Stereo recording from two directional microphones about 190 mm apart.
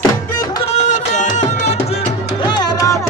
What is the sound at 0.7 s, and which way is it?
Music, 40° left (ahead or behind).